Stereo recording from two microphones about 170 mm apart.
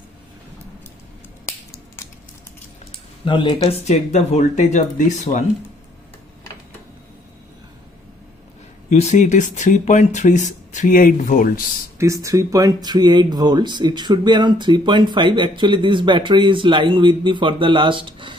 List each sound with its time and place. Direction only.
2.0 s a sound: 15° left (ahead or behind)
3.3 s speech: 30° left (ahead or behind); by 5.4 s 45° left (ahead or behind)
8.9 s speech: 40° left (ahead or behind)
12.0 s speech: 20° right (ahead or behind)